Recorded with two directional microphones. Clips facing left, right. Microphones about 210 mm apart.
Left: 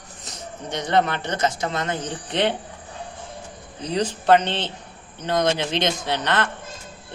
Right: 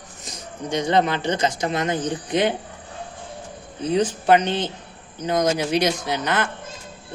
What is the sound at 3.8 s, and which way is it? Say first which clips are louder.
Speech: right 4 dB; 5° right (ahead or behind).